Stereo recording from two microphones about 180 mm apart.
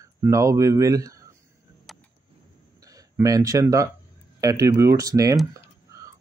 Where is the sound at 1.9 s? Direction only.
Centre (ahead or behind).